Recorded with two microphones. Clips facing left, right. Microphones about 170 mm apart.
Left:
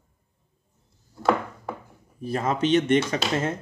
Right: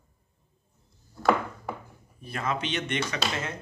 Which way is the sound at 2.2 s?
40° left (ahead or behind).